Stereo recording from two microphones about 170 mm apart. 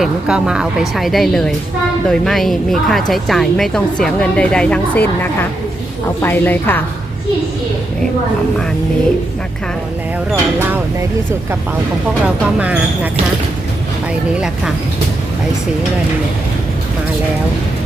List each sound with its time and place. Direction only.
0.0 s a woman's voice: 5° right (ahead or behind); by 6.8 s 10° left (ahead or behind)
10.3 s speech: 15° right (ahead or behind)
12.5 s speech: 10° right (ahead or behind)
14.3 s a woman's voice: 5° right (ahead or behind)